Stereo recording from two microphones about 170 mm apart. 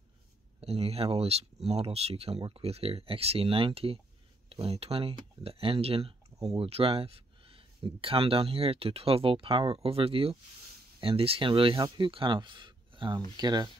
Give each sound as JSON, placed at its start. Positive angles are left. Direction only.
{"t": 0.6, "sound": "speech", "side_deg": -35}